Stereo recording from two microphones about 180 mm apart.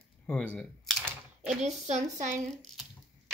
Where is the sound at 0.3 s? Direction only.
10° left (ahead or behind).